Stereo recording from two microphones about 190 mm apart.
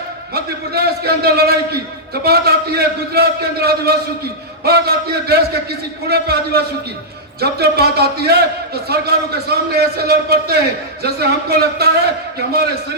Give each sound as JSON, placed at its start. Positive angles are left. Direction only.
{"t": 0.3, "sound": "a man's voice", "side_deg": -55}